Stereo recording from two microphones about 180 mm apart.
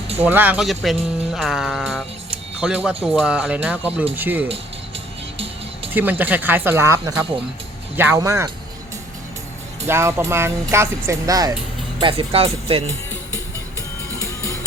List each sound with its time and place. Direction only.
0.2 s speech: 10° right (ahead or behind)
5.9 s speech: 10° right (ahead or behind)
9.8 s speech: 15° right (ahead or behind); by 12.8 s 30° right (ahead or behind)